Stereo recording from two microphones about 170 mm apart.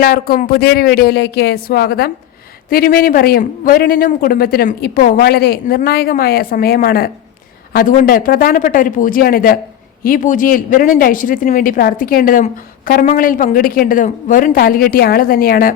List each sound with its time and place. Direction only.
0.0 s a man's voice: 55° left (ahead or behind)